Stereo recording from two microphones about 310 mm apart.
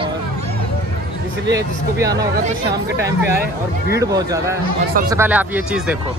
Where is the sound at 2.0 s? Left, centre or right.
Centre.